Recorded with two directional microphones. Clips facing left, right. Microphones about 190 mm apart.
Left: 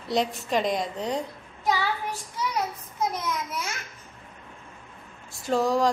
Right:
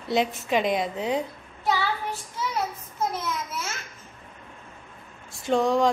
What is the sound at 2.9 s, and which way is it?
Child singing, 15° left (ahead or behind).